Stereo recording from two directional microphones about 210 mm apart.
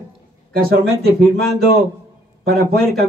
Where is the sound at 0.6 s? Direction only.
45° right (ahead or behind).